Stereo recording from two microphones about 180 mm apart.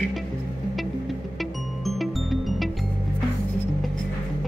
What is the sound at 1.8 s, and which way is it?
Music, centre (ahead or behind).